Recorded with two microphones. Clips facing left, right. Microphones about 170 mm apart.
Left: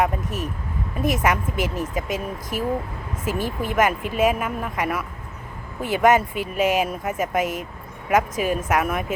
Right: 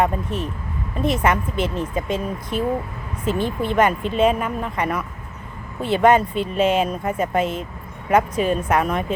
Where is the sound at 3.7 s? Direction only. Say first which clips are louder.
Right 2 dB; 10° left (ahead or behind).